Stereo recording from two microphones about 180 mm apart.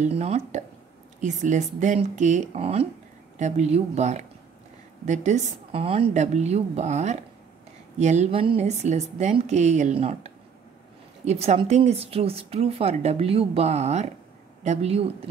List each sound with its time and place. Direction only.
0.0 s a woman's voice: 35° right (ahead or behind)